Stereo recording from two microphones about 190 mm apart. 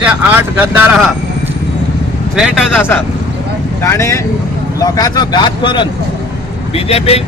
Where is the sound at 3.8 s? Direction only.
15° left (ahead or behind).